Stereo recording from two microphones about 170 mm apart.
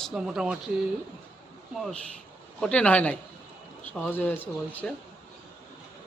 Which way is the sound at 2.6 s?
5° left (ahead or behind).